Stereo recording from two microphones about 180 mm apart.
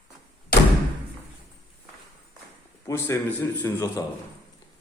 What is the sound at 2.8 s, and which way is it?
A man's voice, 15° left (ahead or behind).